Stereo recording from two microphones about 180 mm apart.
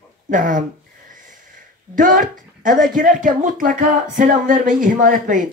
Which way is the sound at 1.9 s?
50° right (ahead or behind).